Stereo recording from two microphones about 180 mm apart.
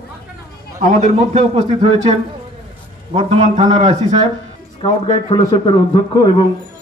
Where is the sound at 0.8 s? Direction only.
40° right (ahead or behind).